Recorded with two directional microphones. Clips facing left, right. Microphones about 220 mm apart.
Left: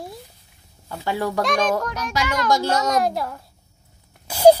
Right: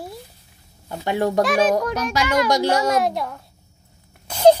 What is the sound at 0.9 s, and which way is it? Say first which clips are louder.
Speech: right 3 dB; 20° right (ahead or behind).